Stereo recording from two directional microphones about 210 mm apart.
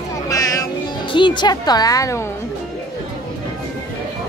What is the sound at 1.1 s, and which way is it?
Speech, 20° left (ahead or behind).